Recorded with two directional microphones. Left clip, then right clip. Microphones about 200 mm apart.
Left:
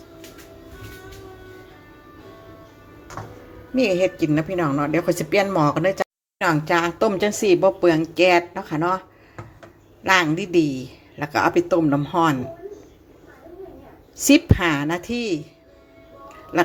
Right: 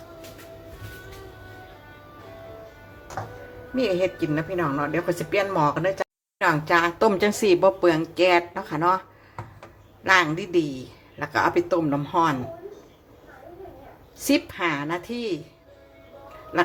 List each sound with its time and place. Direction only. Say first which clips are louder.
3.8 s a woman's voice: left 4 dB; 25° left (ahead or behind)
14.3 s speech: left 6 dB; 25° left (ahead or behind)